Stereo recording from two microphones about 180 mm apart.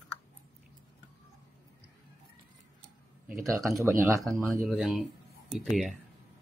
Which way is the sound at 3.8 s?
15° right (ahead or behind).